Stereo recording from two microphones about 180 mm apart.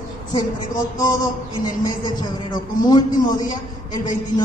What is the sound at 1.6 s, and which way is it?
A man's voice, 25° left (ahead or behind).